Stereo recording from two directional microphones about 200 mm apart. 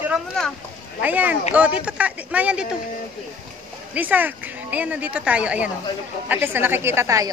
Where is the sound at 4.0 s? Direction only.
10° right (ahead or behind).